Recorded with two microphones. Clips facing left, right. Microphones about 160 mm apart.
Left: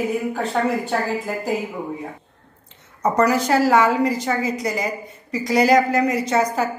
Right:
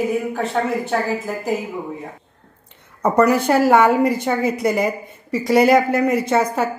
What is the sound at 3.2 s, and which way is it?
A woman's voice, 60° right (ahead or behind).